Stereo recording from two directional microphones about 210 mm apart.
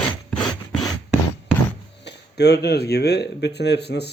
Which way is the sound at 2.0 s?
55° left (ahead or behind).